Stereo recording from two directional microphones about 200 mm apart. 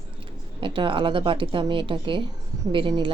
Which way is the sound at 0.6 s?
25° right (ahead or behind).